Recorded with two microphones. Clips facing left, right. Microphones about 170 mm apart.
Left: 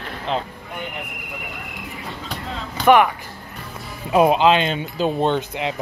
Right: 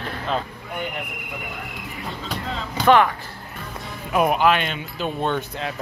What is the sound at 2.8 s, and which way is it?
Speech, 15° left (ahead or behind).